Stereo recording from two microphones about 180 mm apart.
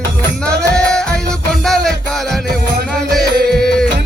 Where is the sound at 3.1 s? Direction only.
Centre (ahead or behind).